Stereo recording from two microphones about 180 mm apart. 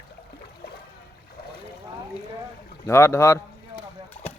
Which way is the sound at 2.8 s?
15° left (ahead or behind).